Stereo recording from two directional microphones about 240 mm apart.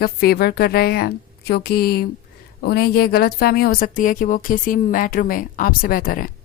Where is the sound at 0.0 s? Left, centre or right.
Left.